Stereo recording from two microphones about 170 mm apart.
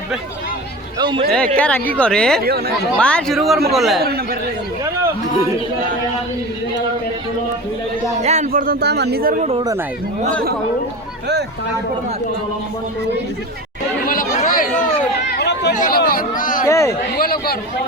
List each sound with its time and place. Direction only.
0.9 s speech: 30° right (ahead or behind)
1.5 s speech: 5° left (ahead or behind)
2.4 s speech: 65° right (ahead or behind)
3.0 s speech: 5° left (ahead or behind)
4.0 s speech: 65° right (ahead or behind)
8.2 s speech: 40° right (ahead or behind)
9.5 s speech: 30° right (ahead or behind)
14.1 s chatter: 50° left (ahead or behind)
15.3 s a sound: 80° left
15.7 s speech: 50° left (ahead or behind)
16.6 s speech: 15° left (ahead or behind)
17.2 s a man's voice: 60° left (ahead or behind)